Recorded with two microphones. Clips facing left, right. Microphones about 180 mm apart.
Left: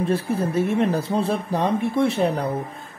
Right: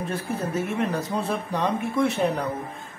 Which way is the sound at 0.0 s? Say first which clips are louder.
Left 6 dB; 30° left (ahead or behind).